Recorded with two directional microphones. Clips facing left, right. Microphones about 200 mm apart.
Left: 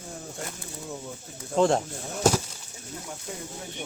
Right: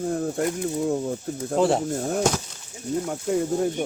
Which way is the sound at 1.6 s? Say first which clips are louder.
Right 1 dB; 5° right (ahead or behind).